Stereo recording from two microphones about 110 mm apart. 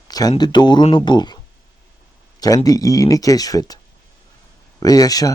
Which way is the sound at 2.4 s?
35° left (ahead or behind).